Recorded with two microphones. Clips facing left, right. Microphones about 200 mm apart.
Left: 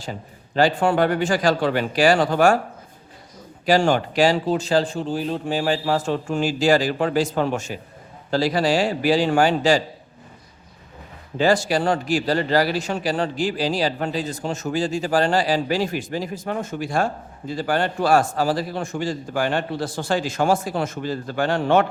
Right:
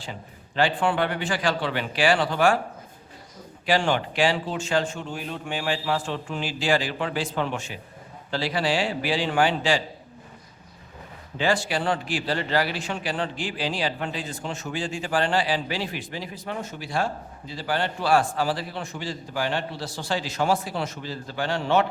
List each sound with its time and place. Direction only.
0.0 s a man's voice: 40° left (ahead or behind)
3.7 s a man's voice: 40° left (ahead or behind)
11.3 s a man's voice: 40° left (ahead or behind)